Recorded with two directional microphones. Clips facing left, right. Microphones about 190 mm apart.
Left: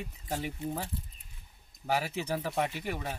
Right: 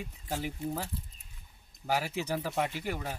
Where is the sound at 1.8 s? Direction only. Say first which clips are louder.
Even; 5° right (ahead or behind).